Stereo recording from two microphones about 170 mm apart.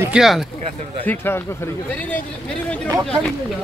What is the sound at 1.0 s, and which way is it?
Speech, 10° left (ahead or behind).